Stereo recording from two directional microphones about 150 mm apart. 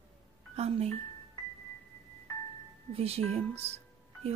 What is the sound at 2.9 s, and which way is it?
Speech, 40° right (ahead or behind).